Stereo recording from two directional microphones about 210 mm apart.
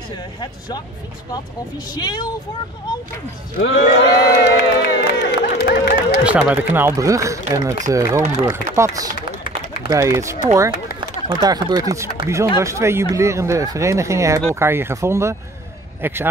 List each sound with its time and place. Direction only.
0.4 s speech: 20° left (ahead or behind)
2.0 s speech: 20° left (ahead or behind)
3.6 s a man's voice: 55° left (ahead or behind)
4.6 s a sound: 50° left (ahead or behind)
6.2 s speech: 5° right (ahead or behind)